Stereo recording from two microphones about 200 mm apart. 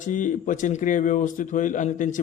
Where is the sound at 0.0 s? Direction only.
40° left (ahead or behind).